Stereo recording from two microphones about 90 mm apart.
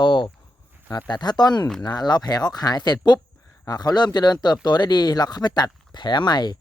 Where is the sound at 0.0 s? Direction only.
60° left (ahead or behind).